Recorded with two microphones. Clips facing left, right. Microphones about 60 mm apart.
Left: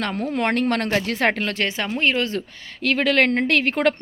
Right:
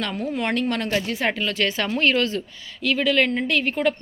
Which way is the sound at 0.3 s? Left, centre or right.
Left.